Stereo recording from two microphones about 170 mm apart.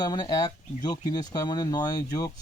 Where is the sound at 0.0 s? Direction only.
25° left (ahead or behind).